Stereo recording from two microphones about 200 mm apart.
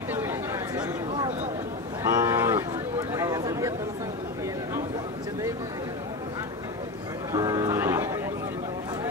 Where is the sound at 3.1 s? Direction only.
15° right (ahead or behind).